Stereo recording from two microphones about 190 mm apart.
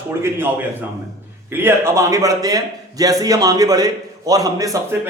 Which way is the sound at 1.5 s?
10° right (ahead or behind).